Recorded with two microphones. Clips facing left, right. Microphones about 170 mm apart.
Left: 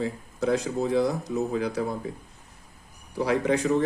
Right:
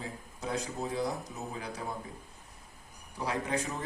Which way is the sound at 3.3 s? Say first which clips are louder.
Left 9 dB; 75° left (ahead or behind).